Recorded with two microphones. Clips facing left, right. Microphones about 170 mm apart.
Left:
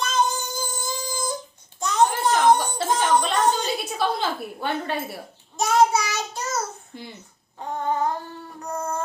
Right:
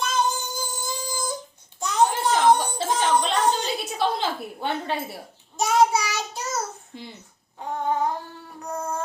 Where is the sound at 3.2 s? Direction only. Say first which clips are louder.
Left 1 dB; 10° left (ahead or behind).